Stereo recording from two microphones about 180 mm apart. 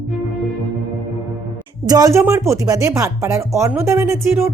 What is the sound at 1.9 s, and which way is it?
Speech, 20° right (ahead or behind).